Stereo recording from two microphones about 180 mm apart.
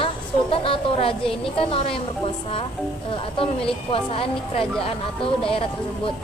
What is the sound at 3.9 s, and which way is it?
A woman's voice, 30° left (ahead or behind).